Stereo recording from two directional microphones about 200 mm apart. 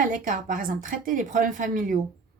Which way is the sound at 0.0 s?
40° right (ahead or behind).